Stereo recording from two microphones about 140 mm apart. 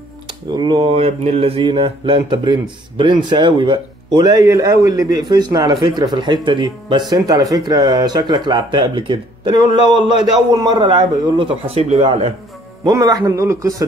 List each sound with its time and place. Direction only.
0.3 s speech: 35° right (ahead or behind)
12.9 s speech: 25° right (ahead or behind)